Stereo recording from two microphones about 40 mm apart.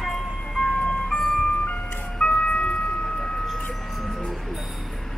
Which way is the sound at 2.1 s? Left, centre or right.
Left.